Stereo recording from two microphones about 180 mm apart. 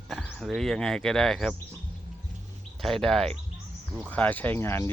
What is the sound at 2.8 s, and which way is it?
Speech, centre (ahead or behind).